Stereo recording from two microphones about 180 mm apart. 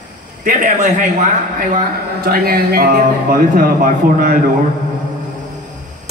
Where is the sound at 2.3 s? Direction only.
55° right (ahead or behind).